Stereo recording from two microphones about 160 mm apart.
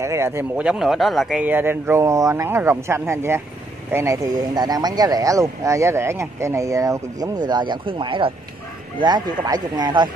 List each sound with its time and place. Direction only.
0.0 s speech: 15° right (ahead or behind)